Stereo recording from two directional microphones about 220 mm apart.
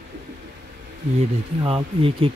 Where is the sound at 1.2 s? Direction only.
25° right (ahead or behind).